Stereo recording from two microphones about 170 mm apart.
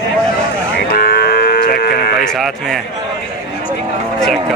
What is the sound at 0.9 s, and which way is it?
Cattle, 65° left (ahead or behind).